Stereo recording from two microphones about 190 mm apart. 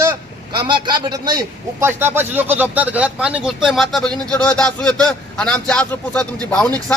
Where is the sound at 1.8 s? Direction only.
10° right (ahead or behind).